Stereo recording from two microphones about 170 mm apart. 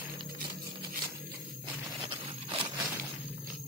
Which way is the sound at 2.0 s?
30° right (ahead or behind).